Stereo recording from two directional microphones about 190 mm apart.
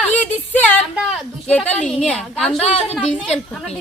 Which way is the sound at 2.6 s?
35° left (ahead or behind).